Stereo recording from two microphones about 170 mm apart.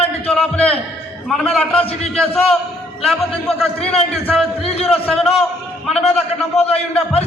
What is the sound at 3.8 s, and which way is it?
Speech, 35° left (ahead or behind).